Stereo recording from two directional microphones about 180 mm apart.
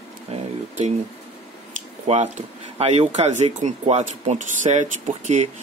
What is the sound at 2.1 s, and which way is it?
Speech, 35° right (ahead or behind).